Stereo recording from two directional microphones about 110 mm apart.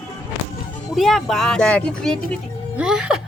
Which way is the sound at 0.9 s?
Centre (ahead or behind).